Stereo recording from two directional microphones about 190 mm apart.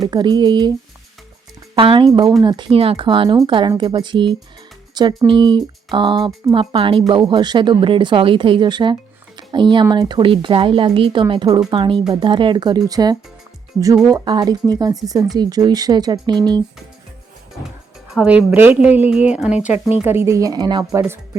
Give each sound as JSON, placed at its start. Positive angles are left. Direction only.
{"t": 0.0, "sound": "speech", "side_deg": -20}
{"t": 1.7, "sound": "speech", "side_deg": -25}
{"t": 18.1, "sound": "a woman's voice", "side_deg": -5}